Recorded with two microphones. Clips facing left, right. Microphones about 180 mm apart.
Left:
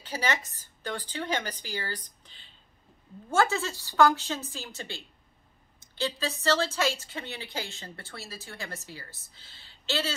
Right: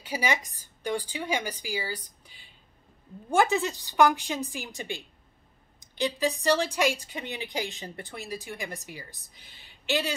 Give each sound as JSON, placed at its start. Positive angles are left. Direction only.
{"t": 0.0, "sound": "a woman's voice", "side_deg": -10}